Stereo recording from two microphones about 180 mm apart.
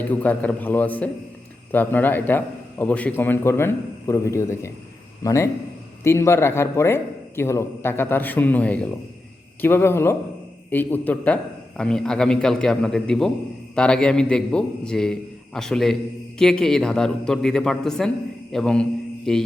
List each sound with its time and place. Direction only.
0.0 s a man's voice: 10° left (ahead or behind)